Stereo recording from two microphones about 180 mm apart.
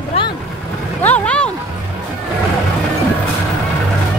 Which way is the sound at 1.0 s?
10° left (ahead or behind).